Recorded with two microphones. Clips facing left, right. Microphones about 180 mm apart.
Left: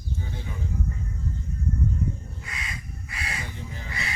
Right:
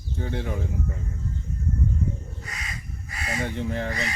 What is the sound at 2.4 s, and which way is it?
Crow, 40° right (ahead or behind).